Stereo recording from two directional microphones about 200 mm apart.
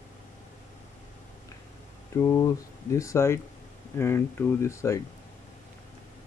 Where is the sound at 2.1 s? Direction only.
15° left (ahead or behind).